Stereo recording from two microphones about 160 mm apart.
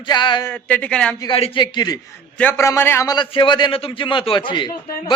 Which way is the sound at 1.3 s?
35° left (ahead or behind).